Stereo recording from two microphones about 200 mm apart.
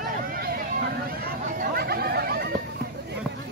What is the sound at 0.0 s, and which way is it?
Vehicle, 45° right (ahead or behind).